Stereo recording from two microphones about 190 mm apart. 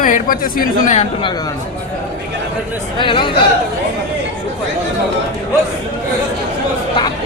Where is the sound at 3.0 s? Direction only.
25° left (ahead or behind).